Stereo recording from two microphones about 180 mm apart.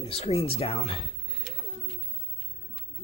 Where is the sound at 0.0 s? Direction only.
35° left (ahead or behind).